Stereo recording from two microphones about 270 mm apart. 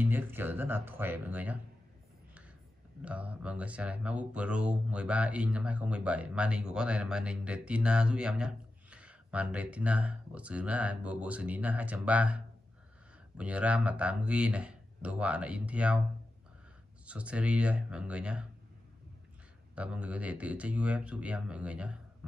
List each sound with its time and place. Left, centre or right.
0.0 s speech: centre
3.0 s speech: centre
13.4 s speech: centre
17.0 s speech: centre
19.7 s speech: centre